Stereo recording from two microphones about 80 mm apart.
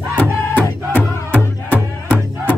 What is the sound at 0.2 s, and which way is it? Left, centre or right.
Music, centre.